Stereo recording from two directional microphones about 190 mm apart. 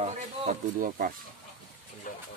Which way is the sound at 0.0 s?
40° right (ahead or behind).